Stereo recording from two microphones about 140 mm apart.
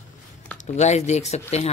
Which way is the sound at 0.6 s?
55° left (ahead or behind).